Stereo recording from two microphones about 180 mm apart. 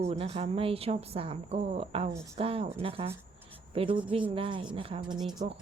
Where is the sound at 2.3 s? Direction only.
30° right (ahead or behind).